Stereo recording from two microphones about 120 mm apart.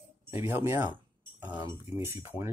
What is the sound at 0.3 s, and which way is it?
Speech, 20° right (ahead or behind).